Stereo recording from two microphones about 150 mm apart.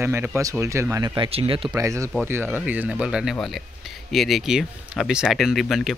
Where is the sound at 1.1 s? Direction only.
30° right (ahead or behind).